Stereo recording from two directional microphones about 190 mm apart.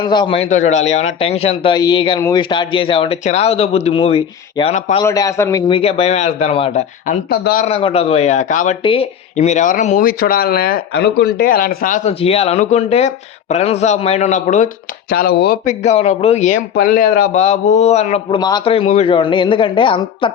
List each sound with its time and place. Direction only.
0.0 s a man's voice: 25° left (ahead or behind)
5.0 s speech: 15° left (ahead or behind); by 7.2 s 35° left (ahead or behind)
7.3 s speech: 55° left (ahead or behind)
7.6 s speech: 30° left (ahead or behind)
8.8 s a man's voice: 25° left (ahead or behind)
9.3 s speech: 40° left (ahead or behind)
15.1 s speech: 55° left (ahead or behind)
15.8 s speech: 35° left (ahead or behind)
17.4 s speech: 35° left (ahead or behind)
18.3 s a man's voice: 20° left (ahead or behind)